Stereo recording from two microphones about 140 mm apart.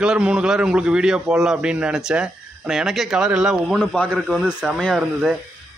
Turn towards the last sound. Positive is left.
turn(degrees=-5)  # may be behind; listen again after turning